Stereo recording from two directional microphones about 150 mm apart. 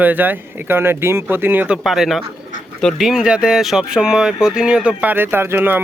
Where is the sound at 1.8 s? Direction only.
Centre (ahead or behind).